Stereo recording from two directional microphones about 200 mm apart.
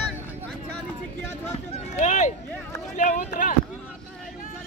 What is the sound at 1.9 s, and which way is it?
Speech, 35° left (ahead or behind).